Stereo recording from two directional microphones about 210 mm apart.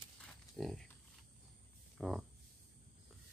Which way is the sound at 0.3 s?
Centre (ahead or behind).